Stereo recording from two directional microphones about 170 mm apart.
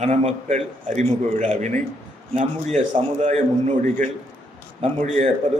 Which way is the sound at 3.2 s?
45° right (ahead or behind).